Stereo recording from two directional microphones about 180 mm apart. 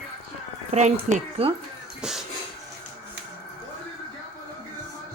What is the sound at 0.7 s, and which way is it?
Speech, 40° right (ahead or behind).